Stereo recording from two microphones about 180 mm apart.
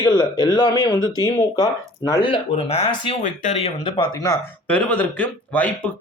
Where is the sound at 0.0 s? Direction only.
25° left (ahead or behind); by 3.6 s 40° left (ahead or behind).